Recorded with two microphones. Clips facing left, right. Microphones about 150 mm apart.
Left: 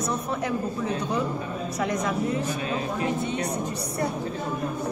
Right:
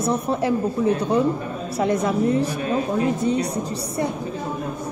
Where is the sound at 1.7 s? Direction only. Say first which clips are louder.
Right 7 dB; 30° right (ahead or behind).